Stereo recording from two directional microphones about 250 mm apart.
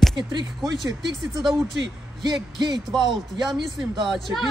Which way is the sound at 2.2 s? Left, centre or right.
Centre.